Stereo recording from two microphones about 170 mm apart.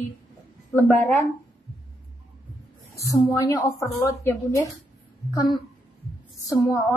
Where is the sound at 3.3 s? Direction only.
20° left (ahead or behind).